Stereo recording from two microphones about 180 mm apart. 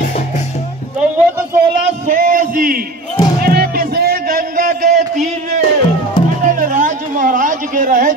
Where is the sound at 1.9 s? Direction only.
50° right (ahead or behind).